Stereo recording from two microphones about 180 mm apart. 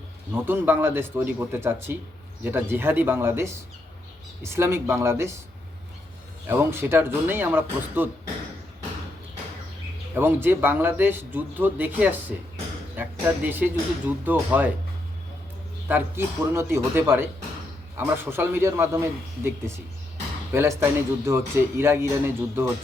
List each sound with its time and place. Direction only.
0.3 s speech: 10° right (ahead or behind)
6.5 s speech: 15° right (ahead or behind)
10.2 s speech: 10° right (ahead or behind)
15.9 s speech: 10° right (ahead or behind)